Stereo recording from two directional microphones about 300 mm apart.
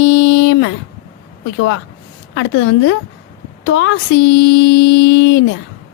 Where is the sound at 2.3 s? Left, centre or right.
Left.